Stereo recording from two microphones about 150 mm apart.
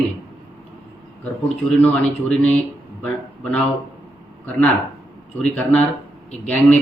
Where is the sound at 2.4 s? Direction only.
5° left (ahead or behind).